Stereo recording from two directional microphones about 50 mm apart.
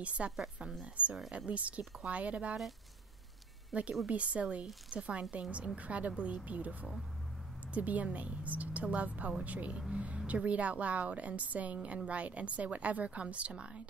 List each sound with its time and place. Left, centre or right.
0.2 s a woman's voice: right
3.7 s a woman's voice: centre